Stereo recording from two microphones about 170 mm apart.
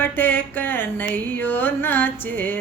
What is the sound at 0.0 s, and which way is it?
Music, 10° left (ahead or behind).